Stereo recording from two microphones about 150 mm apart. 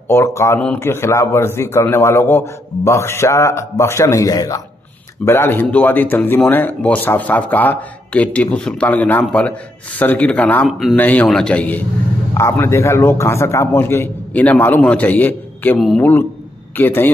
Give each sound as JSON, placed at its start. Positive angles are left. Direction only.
{"t": 0.1, "sound": "a man's voice", "side_deg": 20}